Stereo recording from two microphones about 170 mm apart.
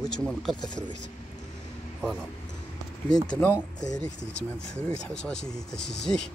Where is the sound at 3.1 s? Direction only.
10° left (ahead or behind).